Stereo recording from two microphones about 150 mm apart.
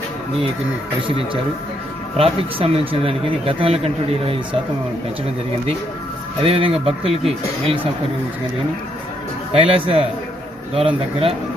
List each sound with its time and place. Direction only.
1.0 s speech: 35° right (ahead or behind)
6.4 s speech: 40° right (ahead or behind)
9.5 s speech: 40° right (ahead or behind)